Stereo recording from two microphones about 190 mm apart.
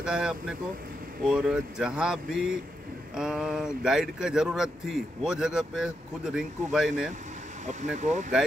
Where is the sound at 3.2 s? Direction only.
5° right (ahead or behind).